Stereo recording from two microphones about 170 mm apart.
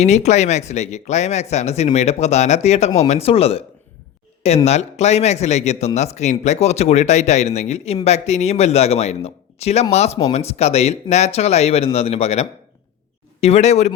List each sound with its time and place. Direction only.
0.0 s speech: 40° left (ahead or behind)